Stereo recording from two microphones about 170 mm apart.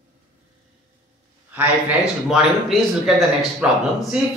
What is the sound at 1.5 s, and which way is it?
Speech, 10° right (ahead or behind).